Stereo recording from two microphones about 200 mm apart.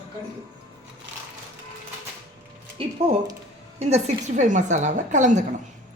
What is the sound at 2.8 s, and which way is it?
A woman's voice, 30° right (ahead or behind).